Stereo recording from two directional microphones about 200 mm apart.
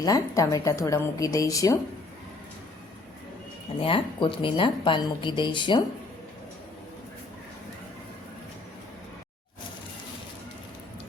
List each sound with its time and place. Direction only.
0.0 s a woman's voice: 15° left (ahead or behind)
3.8 s a woman's voice: 25° left (ahead or behind)